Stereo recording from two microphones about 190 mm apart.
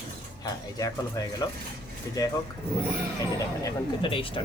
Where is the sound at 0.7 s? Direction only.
20° left (ahead or behind).